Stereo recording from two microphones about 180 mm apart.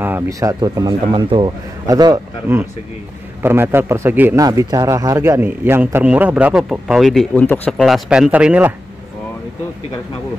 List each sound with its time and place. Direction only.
0.0 s speech: 15° right (ahead or behind)
3.4 s a man's voice: 15° right (ahead or behind)
4.5 s a man's voice: 20° right (ahead or behind); by 7.8 s 10° left (ahead or behind)
7.8 s speech: 5° right (ahead or behind)